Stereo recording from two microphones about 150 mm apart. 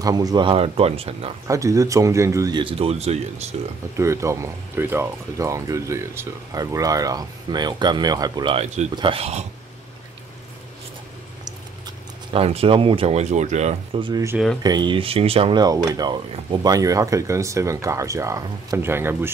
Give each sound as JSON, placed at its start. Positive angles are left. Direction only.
{"t": 0.0, "sound": "speech", "side_deg": -25}
{"t": 1.5, "sound": "speech", "side_deg": -20}
{"t": 2.6, "sound": "speech", "side_deg": -40}
{"t": 3.9, "sound": "speech", "side_deg": -20}
{"t": 12.3, "sound": "speech", "side_deg": -40}
{"t": 13.9, "sound": "speech", "side_deg": -35}
{"t": 15.6, "sound": "speech", "side_deg": -25}